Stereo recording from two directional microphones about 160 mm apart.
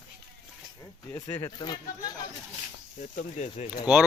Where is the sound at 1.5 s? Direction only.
25° left (ahead or behind).